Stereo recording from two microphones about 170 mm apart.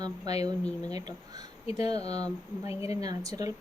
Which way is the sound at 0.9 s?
20° right (ahead or behind).